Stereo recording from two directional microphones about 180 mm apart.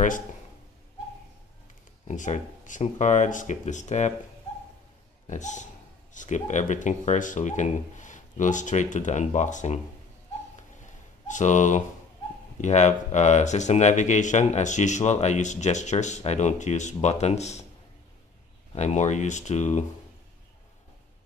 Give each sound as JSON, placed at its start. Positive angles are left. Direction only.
{"t": 2.0, "sound": "speech", "side_deg": 45}
{"t": 5.2, "sound": "speech", "side_deg": 40}
{"t": 11.2, "sound": "speech", "side_deg": 45}
{"t": 18.8, "sound": "speech", "side_deg": 40}